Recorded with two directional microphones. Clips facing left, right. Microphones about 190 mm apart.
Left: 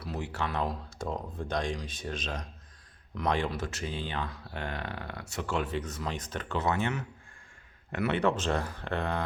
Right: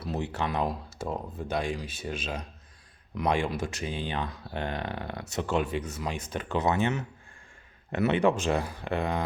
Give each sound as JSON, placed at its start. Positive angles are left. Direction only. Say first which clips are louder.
{"t": 0.0, "sound": "speech", "louder": "right 3 dB", "side_deg": -25}